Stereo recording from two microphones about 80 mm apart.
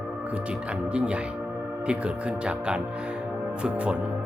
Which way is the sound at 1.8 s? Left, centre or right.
Centre.